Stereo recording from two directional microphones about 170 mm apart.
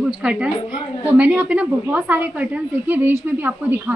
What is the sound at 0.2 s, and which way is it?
A woman's voice, 5° right (ahead or behind).